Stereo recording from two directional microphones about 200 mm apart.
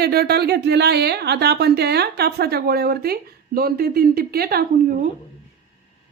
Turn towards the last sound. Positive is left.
turn(degrees=-50)  # may be behind; listen again after turning